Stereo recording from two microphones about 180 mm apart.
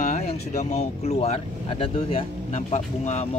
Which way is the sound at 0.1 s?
35° left (ahead or behind).